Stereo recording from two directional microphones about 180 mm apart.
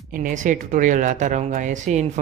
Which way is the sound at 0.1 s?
45° right (ahead or behind).